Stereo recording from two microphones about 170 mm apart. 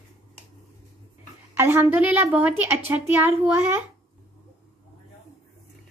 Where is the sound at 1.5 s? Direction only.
15° right (ahead or behind).